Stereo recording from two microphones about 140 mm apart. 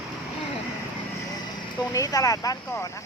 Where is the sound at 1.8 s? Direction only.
25° left (ahead or behind).